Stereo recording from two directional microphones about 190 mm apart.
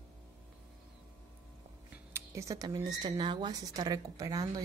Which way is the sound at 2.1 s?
15° right (ahead or behind).